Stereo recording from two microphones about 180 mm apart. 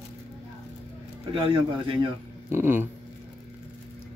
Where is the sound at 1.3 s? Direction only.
30° right (ahead or behind).